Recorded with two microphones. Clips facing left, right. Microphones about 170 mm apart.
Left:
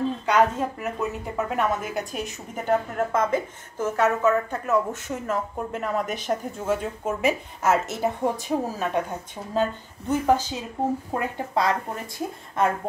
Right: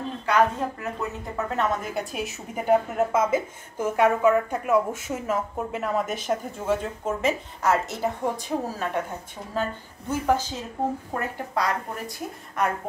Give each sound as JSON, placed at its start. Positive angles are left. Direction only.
{"t": 0.3, "sound": "a woman's voice", "side_deg": 20}
{"t": 7.2, "sound": "speech", "side_deg": 20}